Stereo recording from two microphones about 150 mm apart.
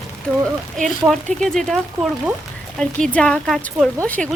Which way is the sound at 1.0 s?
Centre (ahead or behind).